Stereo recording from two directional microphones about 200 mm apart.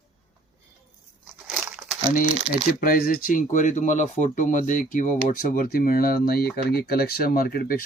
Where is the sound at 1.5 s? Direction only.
Centre (ahead or behind).